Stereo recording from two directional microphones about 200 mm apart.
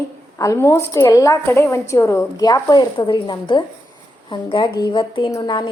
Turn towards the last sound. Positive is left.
turn(degrees=25)  # may be behind; listen again after turning